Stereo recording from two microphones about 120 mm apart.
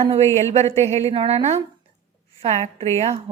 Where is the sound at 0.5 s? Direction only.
60° right (ahead or behind).